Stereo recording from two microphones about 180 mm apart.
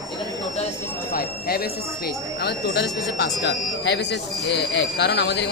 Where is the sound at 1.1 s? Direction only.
55° left (ahead or behind).